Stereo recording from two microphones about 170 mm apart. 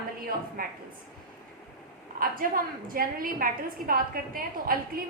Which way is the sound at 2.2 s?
55° right (ahead or behind).